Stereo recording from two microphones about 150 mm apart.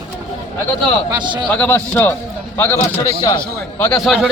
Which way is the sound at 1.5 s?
15° left (ahead or behind).